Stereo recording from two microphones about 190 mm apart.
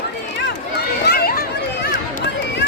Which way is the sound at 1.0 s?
55° left (ahead or behind).